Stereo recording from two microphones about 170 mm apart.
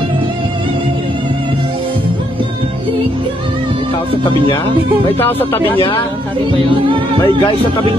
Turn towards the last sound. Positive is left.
turn(degrees=-30)  # may be behind; listen again after turning